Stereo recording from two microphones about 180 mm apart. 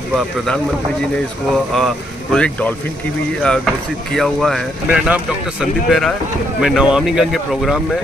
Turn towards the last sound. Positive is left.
turn(degrees=0)  # may be behind; listen again after turning